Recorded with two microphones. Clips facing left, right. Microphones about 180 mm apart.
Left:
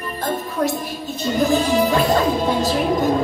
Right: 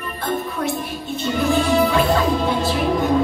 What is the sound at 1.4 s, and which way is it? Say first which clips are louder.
A woman's voice: even; 40° left (ahead or behind).